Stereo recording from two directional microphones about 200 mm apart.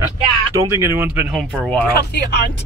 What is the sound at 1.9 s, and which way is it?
Speech, 55° left (ahead or behind).